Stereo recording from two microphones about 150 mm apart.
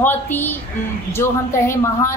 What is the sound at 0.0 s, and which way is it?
A woman's voice, 15° left (ahead or behind).